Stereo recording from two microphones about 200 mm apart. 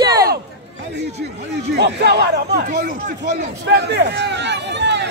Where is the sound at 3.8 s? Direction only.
60° right (ahead or behind).